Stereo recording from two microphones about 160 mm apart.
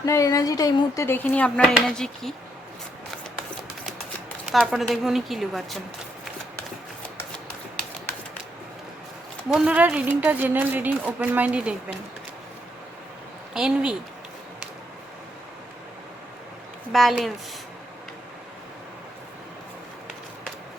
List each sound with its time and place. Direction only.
0.0 s speech: 20° left (ahead or behind); by 2.3 s 5° left (ahead or behind)
4.4 s a woman's voice: centre (ahead or behind)
9.5 s speech: 5° right (ahead or behind)
13.5 s speech: 5° right (ahead or behind)
16.9 s a woman's voice: centre (ahead or behind)